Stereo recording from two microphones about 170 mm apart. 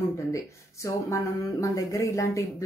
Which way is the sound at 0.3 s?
15° left (ahead or behind).